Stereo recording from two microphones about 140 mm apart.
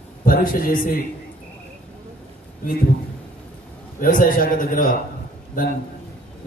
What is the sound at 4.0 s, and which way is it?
Speech, 85° left.